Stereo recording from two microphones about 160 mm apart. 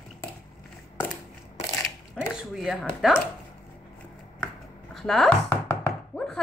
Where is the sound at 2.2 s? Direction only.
Centre (ahead or behind).